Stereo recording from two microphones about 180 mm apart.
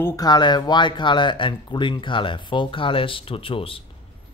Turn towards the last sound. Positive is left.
turn(degrees=30)  # may be behind; listen again after turning